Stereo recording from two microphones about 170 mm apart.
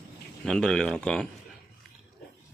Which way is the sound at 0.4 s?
5° left (ahead or behind).